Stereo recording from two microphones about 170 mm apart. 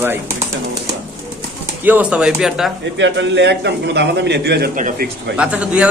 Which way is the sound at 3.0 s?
90° right.